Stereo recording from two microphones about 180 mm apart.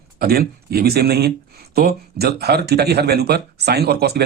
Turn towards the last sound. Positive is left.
turn(degrees=-65)  # may be behind; listen again after turning